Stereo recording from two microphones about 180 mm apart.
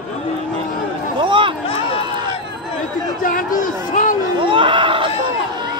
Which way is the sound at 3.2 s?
50° left (ahead or behind).